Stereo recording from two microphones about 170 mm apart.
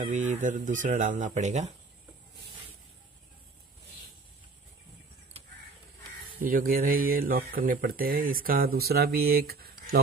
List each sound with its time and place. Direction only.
0.0 s speech: 45° right (ahead or behind)
6.4 s speech: 55° right (ahead or behind)